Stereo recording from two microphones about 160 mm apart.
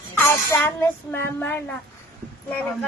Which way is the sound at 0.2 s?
15° left (ahead or behind).